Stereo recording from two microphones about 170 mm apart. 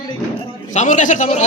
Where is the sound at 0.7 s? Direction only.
45° left (ahead or behind).